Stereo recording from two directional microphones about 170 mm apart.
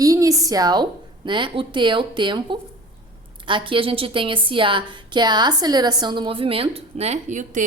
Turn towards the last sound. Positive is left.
turn(degrees=-45)  # may be behind; listen again after turning